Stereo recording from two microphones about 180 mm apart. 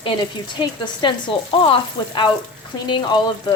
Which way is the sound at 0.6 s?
25° left (ahead or behind).